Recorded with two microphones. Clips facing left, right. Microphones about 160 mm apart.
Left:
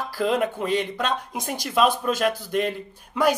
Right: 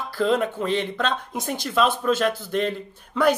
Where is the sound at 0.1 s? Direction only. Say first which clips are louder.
Right 2 dB; 10° left (ahead or behind).